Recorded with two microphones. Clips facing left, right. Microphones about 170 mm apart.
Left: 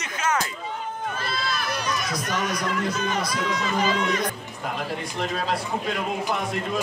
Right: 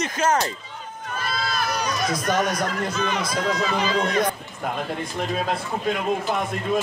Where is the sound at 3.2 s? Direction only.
45° right (ahead or behind).